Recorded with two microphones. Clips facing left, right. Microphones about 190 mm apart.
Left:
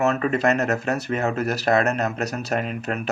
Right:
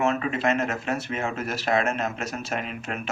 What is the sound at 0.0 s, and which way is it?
Speech, 40° left (ahead or behind).